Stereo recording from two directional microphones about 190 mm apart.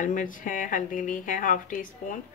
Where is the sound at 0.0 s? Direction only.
45° left (ahead or behind).